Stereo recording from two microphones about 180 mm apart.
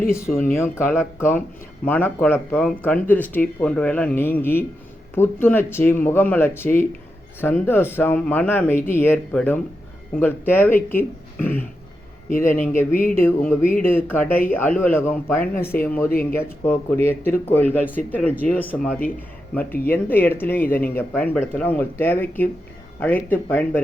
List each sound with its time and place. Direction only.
0.1 s speech: 15° left (ahead or behind)
12.9 s speech: 50° left (ahead or behind)
13.1 s speech: 10° left (ahead or behind)